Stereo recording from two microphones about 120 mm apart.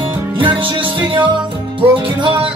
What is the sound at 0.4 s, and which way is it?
Music, 45° right (ahead or behind).